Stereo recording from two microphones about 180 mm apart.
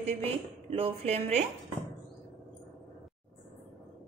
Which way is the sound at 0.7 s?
35° right (ahead or behind).